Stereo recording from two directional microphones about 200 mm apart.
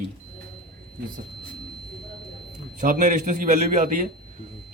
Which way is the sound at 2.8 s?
40° right (ahead or behind).